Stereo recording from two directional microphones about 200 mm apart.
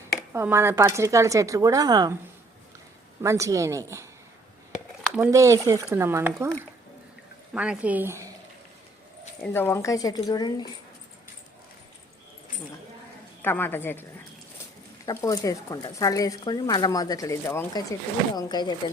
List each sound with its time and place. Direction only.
0.3 s a woman's voice: 10° right (ahead or behind)
3.2 s a woman's voice: 15° right (ahead or behind)
5.0 s a sound: 5° right (ahead or behind)
5.3 s a woman's voice: 15° right (ahead or behind)
7.5 s a woman's voice: 5° right (ahead or behind)
9.4 s speech: 10° left (ahead or behind)
13.4 s speech: 10° left (ahead or behind)